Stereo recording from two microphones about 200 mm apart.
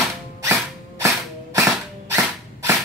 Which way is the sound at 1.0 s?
15° right (ahead or behind).